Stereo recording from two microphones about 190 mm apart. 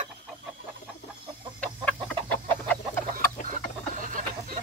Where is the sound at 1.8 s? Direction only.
10° left (ahead or behind).